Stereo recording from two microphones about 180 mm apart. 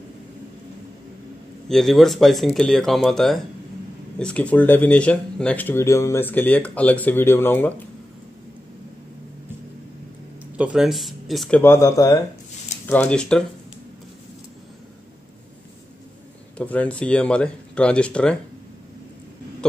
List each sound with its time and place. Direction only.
1.7 s speech: centre (ahead or behind)
10.6 s speech: 5° right (ahead or behind)
11.6 s speech: 15° left (ahead or behind)
16.5 s speech: 10° left (ahead or behind)